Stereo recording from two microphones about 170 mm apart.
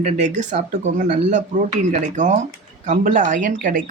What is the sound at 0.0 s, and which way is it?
Speech, 45° right (ahead or behind).